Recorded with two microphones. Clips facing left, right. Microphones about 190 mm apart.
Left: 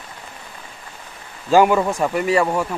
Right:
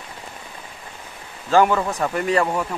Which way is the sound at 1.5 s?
15° left (ahead or behind).